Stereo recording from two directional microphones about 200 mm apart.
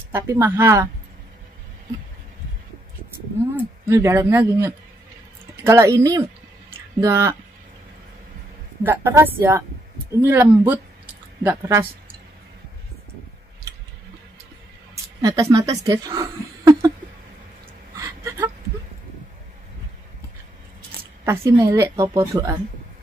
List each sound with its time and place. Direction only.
0.1 s a woman's voice: 15° right (ahead or behind)
3.5 s a woman's voice: 15° right (ahead or behind)
8.8 s a woman's voice: 10° right (ahead or behind)
15.2 s a woman's voice: 15° right (ahead or behind)
17.9 s a sound: 15° right (ahead or behind)
21.3 s a woman's voice: 15° right (ahead or behind)